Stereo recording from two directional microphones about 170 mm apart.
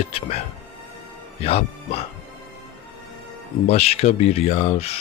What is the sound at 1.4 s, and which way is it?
Speech, 35° left (ahead or behind).